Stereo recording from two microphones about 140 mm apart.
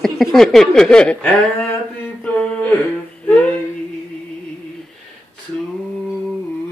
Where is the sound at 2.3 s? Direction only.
10° left (ahead or behind).